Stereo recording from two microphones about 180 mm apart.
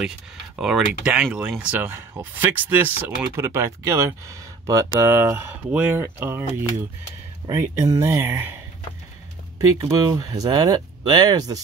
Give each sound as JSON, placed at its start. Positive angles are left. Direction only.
{"t": 0.6, "sound": "speech", "side_deg": -5}
{"t": 7.4, "sound": "speech", "side_deg": -20}
{"t": 9.8, "sound": "speech", "side_deg": -20}